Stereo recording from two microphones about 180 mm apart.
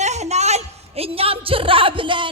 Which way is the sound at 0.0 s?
40° right (ahead or behind).